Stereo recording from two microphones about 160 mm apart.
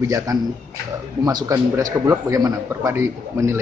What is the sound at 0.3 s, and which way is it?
A man's voice, 20° right (ahead or behind).